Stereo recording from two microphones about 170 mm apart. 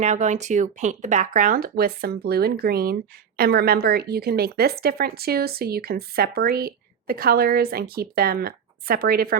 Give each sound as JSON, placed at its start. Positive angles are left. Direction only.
{"t": 0.0, "sound": "speech", "side_deg": -45}